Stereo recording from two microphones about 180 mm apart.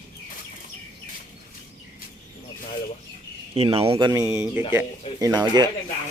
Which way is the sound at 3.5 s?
30° right (ahead or behind).